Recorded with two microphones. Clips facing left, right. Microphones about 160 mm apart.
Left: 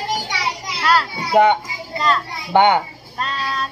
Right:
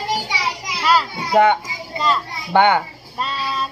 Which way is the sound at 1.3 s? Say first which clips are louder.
Left 1 dB; 15° left (ahead or behind).